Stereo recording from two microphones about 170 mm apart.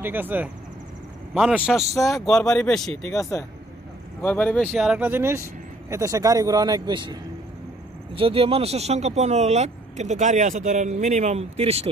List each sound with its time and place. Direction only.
0.0 s speech: 10° right (ahead or behind)
3.1 s speech: 15° left (ahead or behind); by 7.2 s 25° right (ahead or behind)
8.2 s speech: 35° right (ahead or behind)